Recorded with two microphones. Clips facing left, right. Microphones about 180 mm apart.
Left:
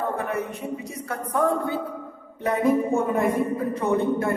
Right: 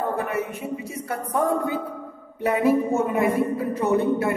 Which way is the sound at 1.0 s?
10° right (ahead or behind).